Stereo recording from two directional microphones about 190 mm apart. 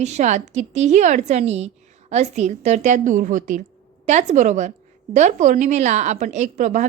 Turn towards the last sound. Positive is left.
turn(degrees=-40)  # may be behind; listen again after turning